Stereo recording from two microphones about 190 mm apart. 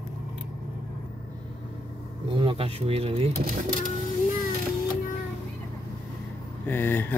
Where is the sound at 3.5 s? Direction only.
45° right (ahead or behind).